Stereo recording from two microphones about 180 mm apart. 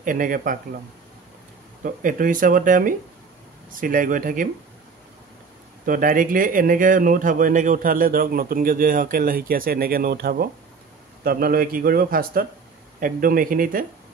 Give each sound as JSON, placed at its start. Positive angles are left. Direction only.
{"t": 0.0, "sound": "speech", "side_deg": -50}
{"t": 1.8, "sound": "speech", "side_deg": -45}
{"t": 5.9, "sound": "a man's voice", "side_deg": -50}